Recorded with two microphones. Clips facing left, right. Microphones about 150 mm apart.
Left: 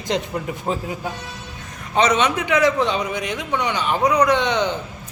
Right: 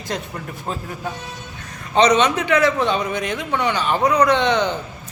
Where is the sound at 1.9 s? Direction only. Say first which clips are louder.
Right 3 dB; 5° left (ahead or behind).